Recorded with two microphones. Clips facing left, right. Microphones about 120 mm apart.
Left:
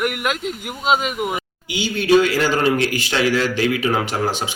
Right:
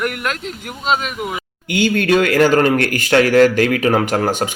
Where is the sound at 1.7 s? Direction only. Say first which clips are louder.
Right 1 dB; 55° right (ahead or behind).